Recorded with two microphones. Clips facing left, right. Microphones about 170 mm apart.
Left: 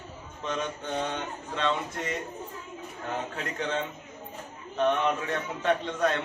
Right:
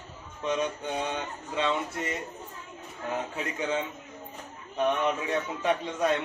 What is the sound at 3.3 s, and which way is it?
Speech, 10° right (ahead or behind).